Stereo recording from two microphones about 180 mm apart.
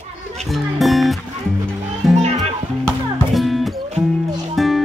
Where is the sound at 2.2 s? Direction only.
35° right (ahead or behind).